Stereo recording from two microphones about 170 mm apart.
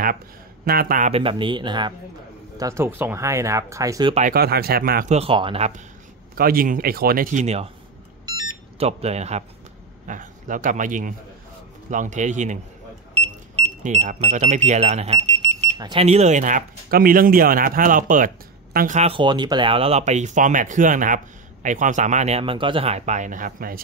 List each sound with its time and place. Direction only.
0.7 s a man's voice: 60° right (ahead or behind)
1.1 s speech: 30° right (ahead or behind)
4.3 s a man's voice: 65° right (ahead or behind)
5.1 s speech: 35° right (ahead or behind)
6.3 s a man's voice: 60° right (ahead or behind); by 7.7 s 40° right (ahead or behind)
8.3 s a sound: 25° right (ahead or behind)
10.0 s a man's voice: 50° right (ahead or behind)
13.1 s speech: 35° right (ahead or behind); by 18.9 s 55° right (ahead or behind)
18.9 s speech: 35° right (ahead or behind); by 23.8 s 55° right (ahead or behind)